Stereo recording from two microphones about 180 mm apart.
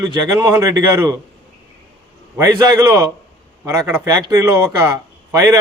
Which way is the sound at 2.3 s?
20° right (ahead or behind).